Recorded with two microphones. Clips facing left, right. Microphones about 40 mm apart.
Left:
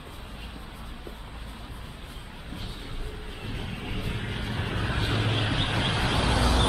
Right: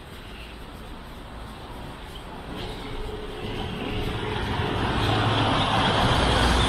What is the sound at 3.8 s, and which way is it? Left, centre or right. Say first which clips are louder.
Vehicle: right 5 dB; right.